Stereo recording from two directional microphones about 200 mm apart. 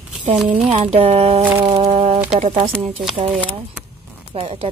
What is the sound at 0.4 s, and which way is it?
Speech, 5° right (ahead or behind).